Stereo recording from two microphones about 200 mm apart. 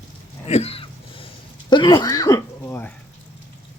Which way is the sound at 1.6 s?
20° left (ahead or behind).